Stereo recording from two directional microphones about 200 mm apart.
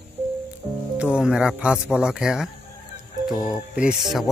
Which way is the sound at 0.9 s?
5° right (ahead or behind).